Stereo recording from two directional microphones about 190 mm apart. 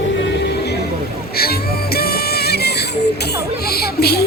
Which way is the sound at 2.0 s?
55° left (ahead or behind).